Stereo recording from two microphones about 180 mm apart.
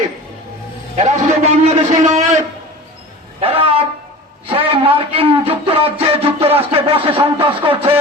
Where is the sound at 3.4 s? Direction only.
30° right (ahead or behind).